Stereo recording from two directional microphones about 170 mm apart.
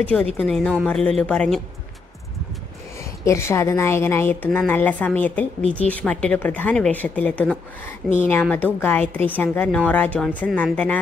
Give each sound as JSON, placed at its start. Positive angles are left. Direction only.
{"t": 0.0, "sound": "a woman's voice", "side_deg": 10}
{"t": 3.0, "sound": "a woman's voice", "side_deg": 15}